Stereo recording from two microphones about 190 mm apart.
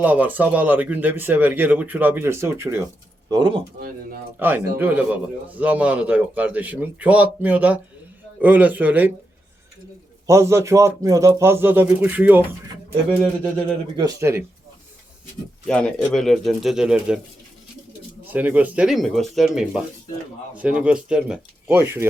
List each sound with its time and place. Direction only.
0.0 s speech: 10° right (ahead or behind)
4.4 s speech: 10° right (ahead or behind)
10.2 s speech: 15° right (ahead or behind)
13.9 s speech: 20° right (ahead or behind)
15.6 s speech: 5° left (ahead or behind)
18.3 s speech: 10° right (ahead or behind)